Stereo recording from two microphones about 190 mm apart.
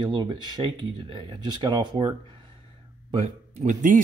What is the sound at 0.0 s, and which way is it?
Speech, 20° right (ahead or behind).